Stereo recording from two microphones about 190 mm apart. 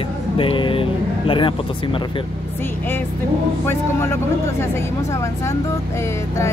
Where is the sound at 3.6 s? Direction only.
15° left (ahead or behind).